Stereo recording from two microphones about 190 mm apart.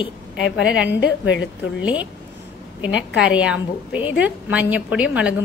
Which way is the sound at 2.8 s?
5° right (ahead or behind).